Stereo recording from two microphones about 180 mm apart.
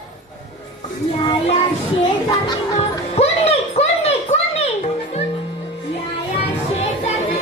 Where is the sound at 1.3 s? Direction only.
35° left (ahead or behind).